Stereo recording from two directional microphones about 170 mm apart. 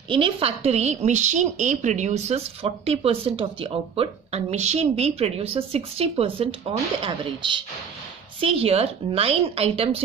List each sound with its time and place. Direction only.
0.1 s a woman's voice: 30° right (ahead or behind)